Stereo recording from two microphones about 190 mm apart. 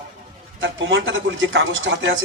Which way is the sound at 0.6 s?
85° right.